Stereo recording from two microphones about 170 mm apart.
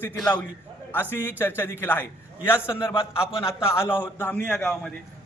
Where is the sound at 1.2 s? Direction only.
15° left (ahead or behind).